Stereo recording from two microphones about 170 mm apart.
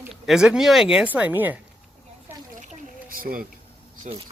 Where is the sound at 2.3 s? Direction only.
10° right (ahead or behind).